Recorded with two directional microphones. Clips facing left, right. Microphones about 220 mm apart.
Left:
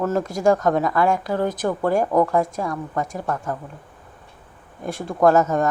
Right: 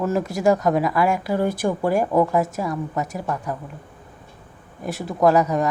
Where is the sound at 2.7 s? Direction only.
20° right (ahead or behind).